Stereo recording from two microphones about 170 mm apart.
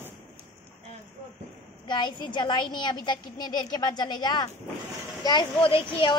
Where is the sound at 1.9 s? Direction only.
25° left (ahead or behind).